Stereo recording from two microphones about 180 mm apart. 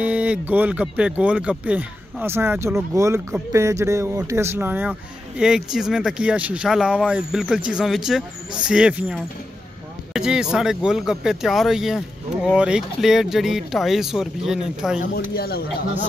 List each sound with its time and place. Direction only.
0.0 s speech: 10° right (ahead or behind)
15.1 s speech: 60° left (ahead or behind)